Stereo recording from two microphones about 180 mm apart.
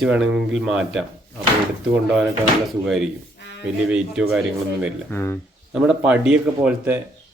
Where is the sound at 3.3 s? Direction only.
70° left (ahead or behind).